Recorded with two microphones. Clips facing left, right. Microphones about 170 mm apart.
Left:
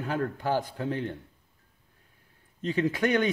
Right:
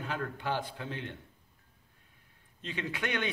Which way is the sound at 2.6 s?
40° left (ahead or behind).